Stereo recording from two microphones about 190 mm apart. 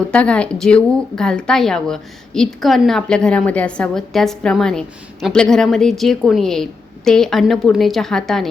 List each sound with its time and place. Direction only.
0.1 s speech: 5° left (ahead or behind)